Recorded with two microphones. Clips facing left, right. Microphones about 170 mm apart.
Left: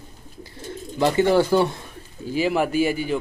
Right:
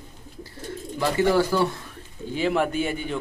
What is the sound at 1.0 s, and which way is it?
Speech, 25° left (ahead or behind).